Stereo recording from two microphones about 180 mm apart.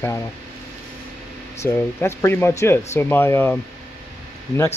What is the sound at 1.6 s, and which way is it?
Speech, 15° left (ahead or behind).